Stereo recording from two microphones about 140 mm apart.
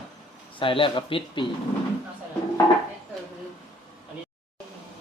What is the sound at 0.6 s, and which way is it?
Speech, 40° left (ahead or behind).